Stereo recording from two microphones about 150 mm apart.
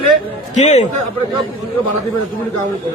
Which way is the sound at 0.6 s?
50° left (ahead or behind).